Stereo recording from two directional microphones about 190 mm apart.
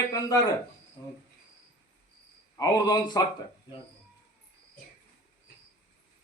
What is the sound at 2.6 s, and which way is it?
Speech, 20° left (ahead or behind).